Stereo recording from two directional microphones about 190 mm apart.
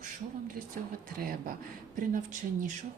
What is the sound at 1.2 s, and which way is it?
Speech, 50° right (ahead or behind).